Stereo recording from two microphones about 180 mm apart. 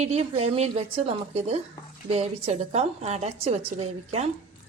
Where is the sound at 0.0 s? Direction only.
35° right (ahead or behind).